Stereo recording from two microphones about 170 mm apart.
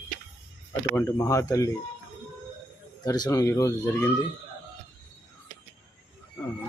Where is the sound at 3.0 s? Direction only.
20° left (ahead or behind).